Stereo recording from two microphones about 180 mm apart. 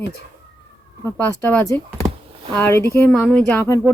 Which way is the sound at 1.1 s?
10° left (ahead or behind).